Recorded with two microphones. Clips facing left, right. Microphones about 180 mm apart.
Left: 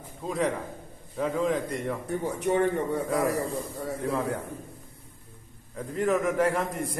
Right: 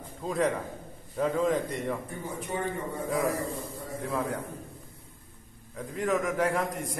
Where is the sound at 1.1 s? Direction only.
Centre (ahead or behind).